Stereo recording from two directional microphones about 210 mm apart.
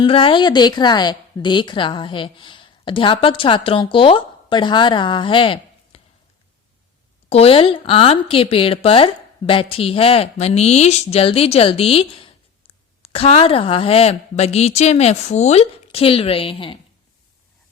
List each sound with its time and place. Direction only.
0.0 s speech: 25° left (ahead or behind)
7.3 s speech: 30° left (ahead or behind)